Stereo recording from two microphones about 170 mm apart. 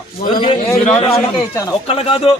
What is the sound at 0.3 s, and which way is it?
A man's voice, 25° left (ahead or behind).